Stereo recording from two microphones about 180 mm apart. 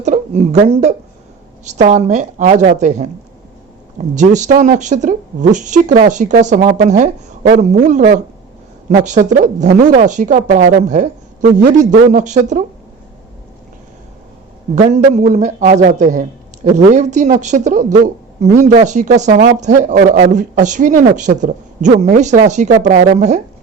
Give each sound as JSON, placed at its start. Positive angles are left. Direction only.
{"t": 0.0, "sound": "a woman's voice", "side_deg": -40}
{"t": 4.1, "sound": "a woman's voice", "side_deg": -40}
{"t": 9.0, "sound": "a woman's voice", "side_deg": -40}
{"t": 14.8, "sound": "a woman's voice", "side_deg": -40}